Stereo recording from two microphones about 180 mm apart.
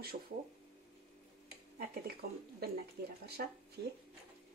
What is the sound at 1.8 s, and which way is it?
Speech, 55° right (ahead or behind).